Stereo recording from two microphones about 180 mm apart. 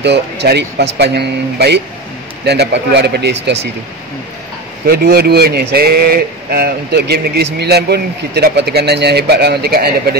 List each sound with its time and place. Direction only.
0.0 s speech: 70° right (ahead or behind)
4.8 s speech: 60° right (ahead or behind)